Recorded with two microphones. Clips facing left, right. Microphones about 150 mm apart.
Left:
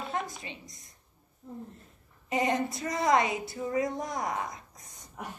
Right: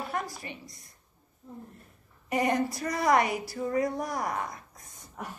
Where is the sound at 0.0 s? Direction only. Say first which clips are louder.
Right 1 dB; 20° left (ahead or behind).